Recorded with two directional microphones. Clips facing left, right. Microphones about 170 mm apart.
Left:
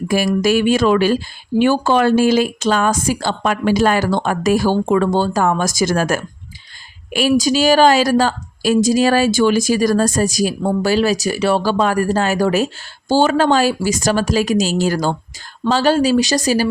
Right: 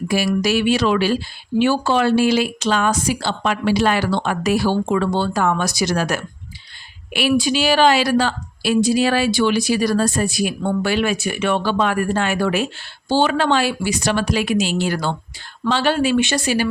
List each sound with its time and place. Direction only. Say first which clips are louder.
0.1 s speech: left 3 dB; 50° left (ahead or behind)